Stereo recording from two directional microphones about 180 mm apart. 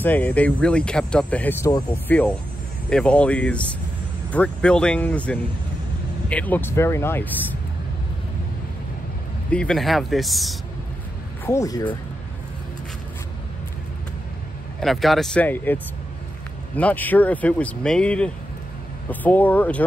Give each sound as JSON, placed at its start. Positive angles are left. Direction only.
{"t": 0.0, "sound": "speech", "side_deg": 10}
{"t": 9.5, "sound": "speech", "side_deg": 5}
{"t": 11.4, "sound": "speech", "side_deg": 15}
{"t": 14.8, "sound": "speech", "side_deg": 0}